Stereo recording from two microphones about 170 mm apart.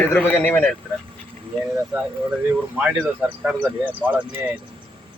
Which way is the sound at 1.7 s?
20° right (ahead or behind).